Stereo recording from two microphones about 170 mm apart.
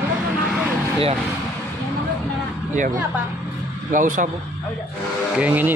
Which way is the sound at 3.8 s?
50° right (ahead or behind).